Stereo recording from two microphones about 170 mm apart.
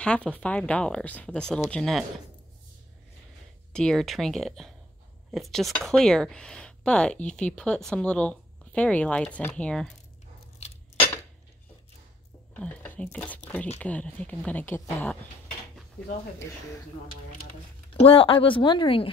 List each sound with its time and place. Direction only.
0.0 s speech: 5° left (ahead or behind)
3.7 s speech: 5° left (ahead or behind)
10.6 s a sound: 40° left (ahead or behind)
12.5 s speech: 10° left (ahead or behind)
18.0 s speech: 30° left (ahead or behind)